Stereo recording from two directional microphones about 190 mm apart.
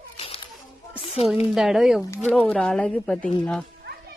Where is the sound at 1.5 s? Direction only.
Centre (ahead or behind).